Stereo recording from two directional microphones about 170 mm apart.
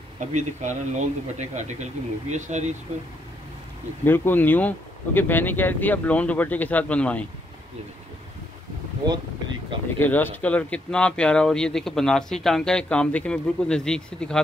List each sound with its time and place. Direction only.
0.2 s speech: 45° right (ahead or behind)
4.0 s speech: 10° left (ahead or behind)
9.9 s speech: 10° left (ahead or behind)